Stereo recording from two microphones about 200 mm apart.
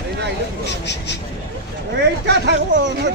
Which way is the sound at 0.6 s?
60° left (ahead or behind).